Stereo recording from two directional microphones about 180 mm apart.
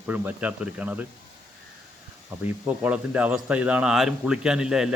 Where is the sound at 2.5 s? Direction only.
10° right (ahead or behind).